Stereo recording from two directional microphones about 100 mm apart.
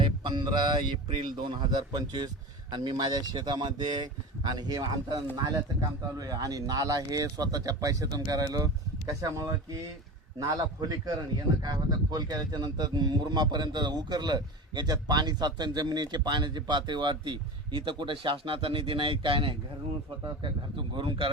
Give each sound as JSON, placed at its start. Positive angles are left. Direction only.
{"t": 0.0, "sound": "a man's voice", "side_deg": -50}